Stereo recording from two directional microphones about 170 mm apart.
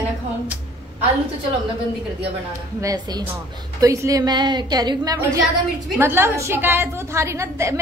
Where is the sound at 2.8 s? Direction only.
20° right (ahead or behind).